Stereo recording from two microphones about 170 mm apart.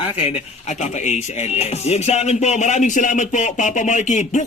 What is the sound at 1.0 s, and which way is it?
Speech, 40° left (ahead or behind).